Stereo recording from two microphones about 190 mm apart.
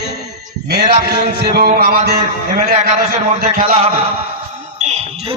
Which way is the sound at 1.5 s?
50° right (ahead or behind).